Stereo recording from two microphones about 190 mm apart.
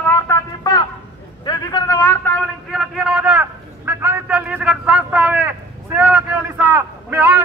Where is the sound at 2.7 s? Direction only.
Centre (ahead or behind).